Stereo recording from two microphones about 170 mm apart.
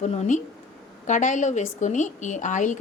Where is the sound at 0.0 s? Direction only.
45° left (ahead or behind).